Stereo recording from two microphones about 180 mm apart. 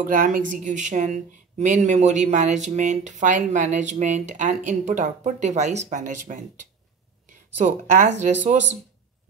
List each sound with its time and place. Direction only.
0.0 s speech: 50° right (ahead or behind)